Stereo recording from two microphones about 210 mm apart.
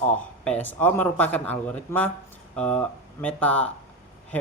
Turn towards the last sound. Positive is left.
turn(degrees=5)  # may be behind; listen again after turning